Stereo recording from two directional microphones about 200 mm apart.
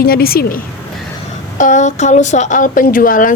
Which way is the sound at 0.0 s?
50° left (ahead or behind).